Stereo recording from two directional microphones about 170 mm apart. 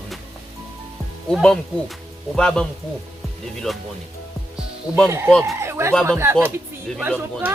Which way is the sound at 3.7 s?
Centre (ahead or behind).